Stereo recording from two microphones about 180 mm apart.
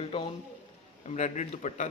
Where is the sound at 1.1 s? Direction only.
45° left (ahead or behind).